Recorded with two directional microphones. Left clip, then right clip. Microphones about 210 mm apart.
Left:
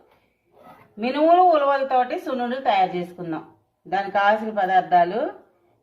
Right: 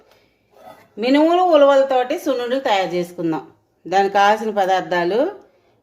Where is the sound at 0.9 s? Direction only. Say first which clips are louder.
Right 2 dB; 50° right (ahead or behind).